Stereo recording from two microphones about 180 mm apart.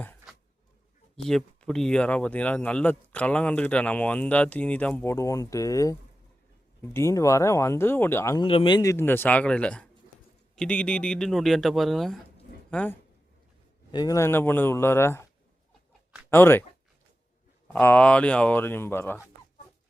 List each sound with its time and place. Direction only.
1.1 s speech: centre (ahead or behind)
8.4 s speech: 30° left (ahead or behind); by 13.0 s 10° left (ahead or behind)
13.9 s speech: 20° left (ahead or behind)
16.3 s speech: 10° left (ahead or behind)
17.7 s speech: 10° left (ahead or behind)